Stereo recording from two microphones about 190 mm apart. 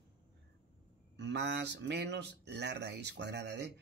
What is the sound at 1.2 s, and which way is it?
Speech, 65° right (ahead or behind).